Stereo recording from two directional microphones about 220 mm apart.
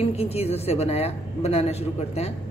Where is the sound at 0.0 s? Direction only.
25° left (ahead or behind).